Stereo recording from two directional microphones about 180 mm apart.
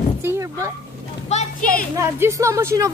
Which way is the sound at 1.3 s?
40° left (ahead or behind).